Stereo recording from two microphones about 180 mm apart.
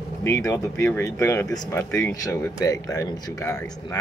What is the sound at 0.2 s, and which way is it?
Speech, 15° left (ahead or behind).